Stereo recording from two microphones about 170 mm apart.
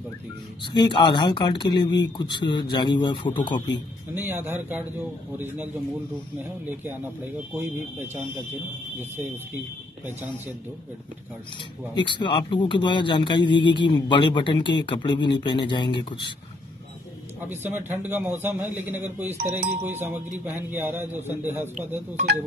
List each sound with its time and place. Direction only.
0.7 s speech: 30° left (ahead or behind)
4.1 s a man's voice: 10° right (ahead or behind)
7.5 s a man's voice: 10° right (ahead or behind)
11.9 s speech: 25° left (ahead or behind)
17.5 s a man's voice: 15° right (ahead or behind)
19.3 s speech: 45° right (ahead or behind)
19.8 s a man's voice: 10° right (ahead or behind)